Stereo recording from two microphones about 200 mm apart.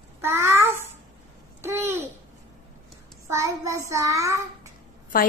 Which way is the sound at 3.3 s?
15° right (ahead or behind).